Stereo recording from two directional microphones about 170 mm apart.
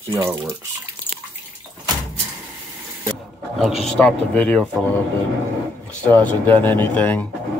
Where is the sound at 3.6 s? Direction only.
Centre (ahead or behind).